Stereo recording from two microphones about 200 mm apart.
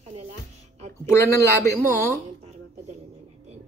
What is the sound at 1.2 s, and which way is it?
Speech, 10° left (ahead or behind).